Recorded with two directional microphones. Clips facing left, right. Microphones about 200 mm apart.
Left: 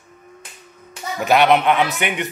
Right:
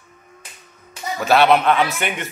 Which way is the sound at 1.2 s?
15° left (ahead or behind).